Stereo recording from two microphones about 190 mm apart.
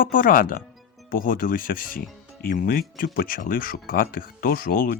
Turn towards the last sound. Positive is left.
turn(degrees=50)  # may be behind; listen again after turning